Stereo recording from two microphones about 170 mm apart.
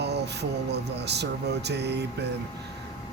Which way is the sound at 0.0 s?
80° right.